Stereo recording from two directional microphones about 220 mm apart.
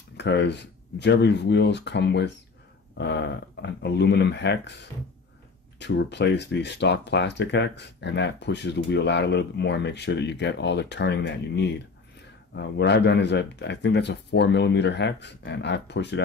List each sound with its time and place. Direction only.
0.2 s speech: 50° left (ahead or behind)